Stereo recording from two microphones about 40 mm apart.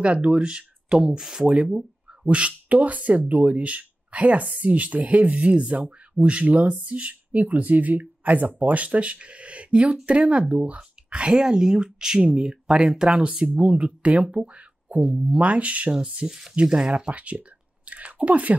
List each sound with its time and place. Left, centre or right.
0.0 s speech: right
13.6 s speech: right
15.0 s speech: right
15.3 s speech: right
15.9 s speech: right